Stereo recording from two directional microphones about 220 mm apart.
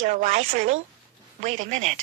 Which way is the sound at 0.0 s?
35° right (ahead or behind).